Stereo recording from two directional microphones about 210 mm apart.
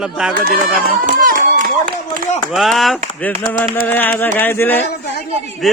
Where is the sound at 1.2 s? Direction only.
40° right (ahead or behind).